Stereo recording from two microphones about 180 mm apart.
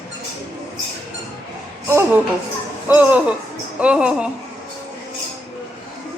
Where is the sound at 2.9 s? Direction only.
10° right (ahead or behind).